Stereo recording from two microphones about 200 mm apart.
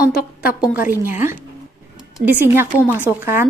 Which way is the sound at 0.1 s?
45° left (ahead or behind).